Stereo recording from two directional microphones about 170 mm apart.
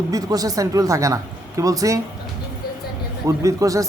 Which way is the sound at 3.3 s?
20° right (ahead or behind).